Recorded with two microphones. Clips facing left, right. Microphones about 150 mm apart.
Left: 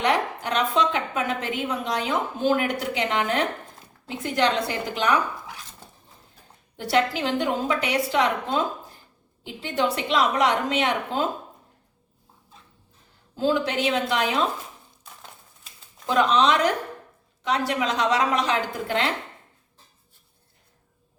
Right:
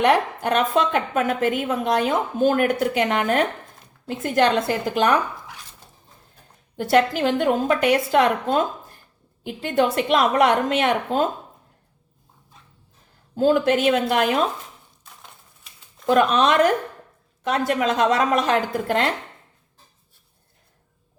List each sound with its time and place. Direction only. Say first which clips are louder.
0.0 s a woman's voice: right 5 dB; 55° right (ahead or behind)
6.7 s a woman's voice: right 4 dB; 50° right (ahead or behind)
13.3 s a woman's voice: right 6 dB; 50° right (ahead or behind)
16.0 s a woman's voice: right 3 dB; 55° right (ahead or behind)